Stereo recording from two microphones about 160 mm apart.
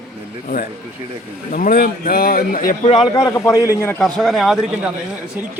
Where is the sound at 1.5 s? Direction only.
60° left (ahead or behind).